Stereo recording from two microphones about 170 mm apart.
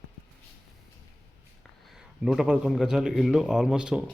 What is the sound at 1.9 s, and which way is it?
Speech, 5° right (ahead or behind).